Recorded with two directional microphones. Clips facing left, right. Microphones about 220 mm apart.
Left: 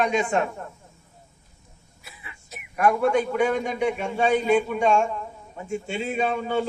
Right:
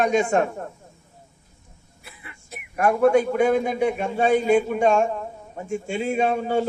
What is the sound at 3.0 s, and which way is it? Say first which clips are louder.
A man's voice: right 4 dB; 40° right (ahead or behind).